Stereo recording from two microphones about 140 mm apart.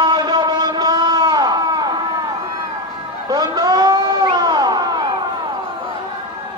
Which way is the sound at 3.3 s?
30° right (ahead or behind).